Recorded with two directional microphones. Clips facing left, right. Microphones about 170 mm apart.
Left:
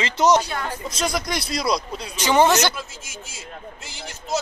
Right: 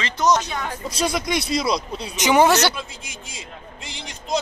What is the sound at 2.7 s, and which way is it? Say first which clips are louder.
Speech: right 1 dB; 5° left (ahead or behind).